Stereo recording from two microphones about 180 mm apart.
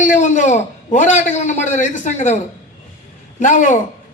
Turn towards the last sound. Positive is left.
turn(degrees=45)  # may be behind; listen again after turning